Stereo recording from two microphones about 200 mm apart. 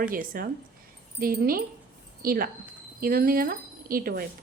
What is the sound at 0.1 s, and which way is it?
Speech, 45° right (ahead or behind).